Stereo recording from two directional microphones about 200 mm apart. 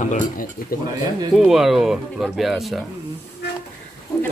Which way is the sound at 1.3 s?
Centre (ahead or behind).